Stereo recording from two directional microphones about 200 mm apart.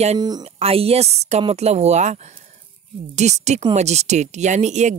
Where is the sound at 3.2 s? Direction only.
35° right (ahead or behind).